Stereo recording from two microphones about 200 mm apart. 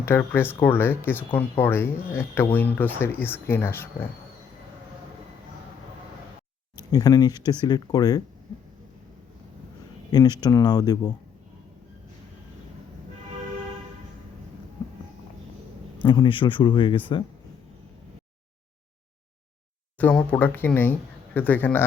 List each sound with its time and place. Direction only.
0.0 s speech: 10° left (ahead or behind)
6.9 s speech: 20° left (ahead or behind)
10.1 s speech: 20° left (ahead or behind)
16.0 s speech: 25° left (ahead or behind)
20.0 s speech: 10° left (ahead or behind)